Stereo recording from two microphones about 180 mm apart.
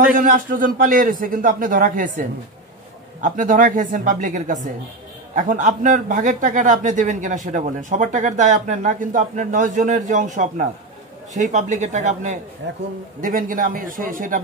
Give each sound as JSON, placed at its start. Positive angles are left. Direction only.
{"t": 0.1, "sound": "a man's voice", "side_deg": -50}